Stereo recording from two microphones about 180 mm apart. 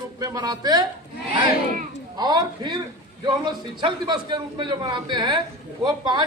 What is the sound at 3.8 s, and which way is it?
A man's voice, 25° right (ahead or behind).